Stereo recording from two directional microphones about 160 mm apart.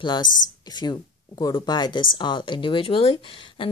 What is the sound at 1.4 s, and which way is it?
Speech, 25° left (ahead or behind).